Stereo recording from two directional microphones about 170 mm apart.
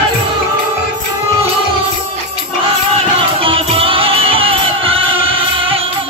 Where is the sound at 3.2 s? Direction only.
30° right (ahead or behind).